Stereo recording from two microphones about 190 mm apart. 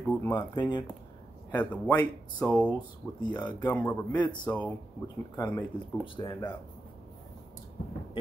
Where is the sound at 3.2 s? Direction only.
20° left (ahead or behind).